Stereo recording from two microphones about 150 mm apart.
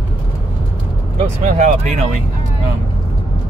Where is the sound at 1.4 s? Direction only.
55° right (ahead or behind).